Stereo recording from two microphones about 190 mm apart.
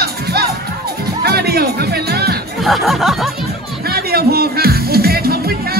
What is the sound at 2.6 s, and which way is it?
Speech, centre (ahead or behind).